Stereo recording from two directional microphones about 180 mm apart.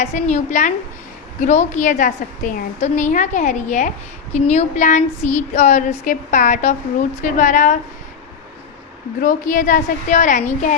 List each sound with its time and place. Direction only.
0.0 s a woman's voice: 40° left (ahead or behind)
9.2 s a woman's voice: 50° left (ahead or behind)